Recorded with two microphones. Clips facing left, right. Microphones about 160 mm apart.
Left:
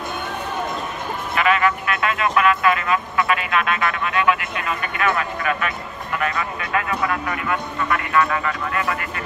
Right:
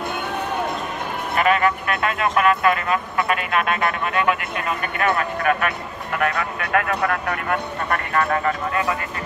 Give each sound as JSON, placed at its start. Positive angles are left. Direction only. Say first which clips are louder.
{"t": 1.3, "sound": "speech", "louder": "right 1 dB", "side_deg": -45}